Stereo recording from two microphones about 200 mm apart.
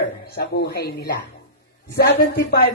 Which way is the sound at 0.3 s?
55° left (ahead or behind).